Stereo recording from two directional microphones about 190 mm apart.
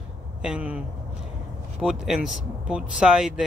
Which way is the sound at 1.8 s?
Centre (ahead or behind).